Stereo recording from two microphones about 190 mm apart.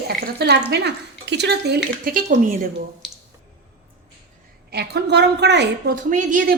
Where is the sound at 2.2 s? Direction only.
45° right (ahead or behind).